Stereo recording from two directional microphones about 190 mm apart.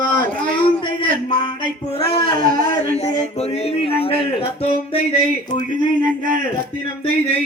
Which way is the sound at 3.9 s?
30° left (ahead or behind).